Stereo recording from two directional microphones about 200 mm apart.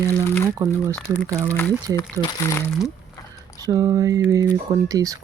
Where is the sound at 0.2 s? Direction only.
10° left (ahead or behind).